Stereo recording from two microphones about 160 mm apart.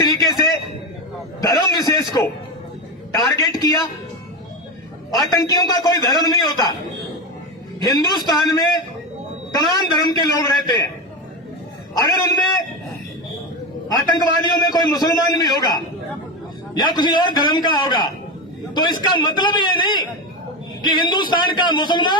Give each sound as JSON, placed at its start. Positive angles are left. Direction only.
{"t": 0.0, "sound": "a sound", "side_deg": 25}
{"t": 3.3, "sound": "a man's voice", "side_deg": 25}
{"t": 5.3, "sound": "a man's voice", "side_deg": 25}
{"t": 7.8, "sound": "a man's voice", "side_deg": 25}
{"t": 11.9, "sound": "a man's voice", "side_deg": 25}
{"t": 13.8, "sound": "a man's voice", "side_deg": 25}